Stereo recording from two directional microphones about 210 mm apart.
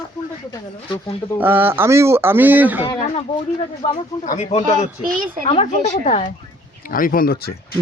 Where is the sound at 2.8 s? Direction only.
30° left (ahead or behind).